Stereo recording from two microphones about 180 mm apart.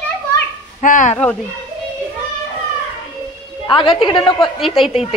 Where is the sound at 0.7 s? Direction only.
45° left (ahead or behind).